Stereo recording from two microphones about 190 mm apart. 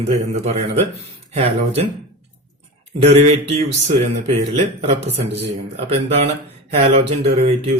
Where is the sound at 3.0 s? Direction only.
35° right (ahead or behind).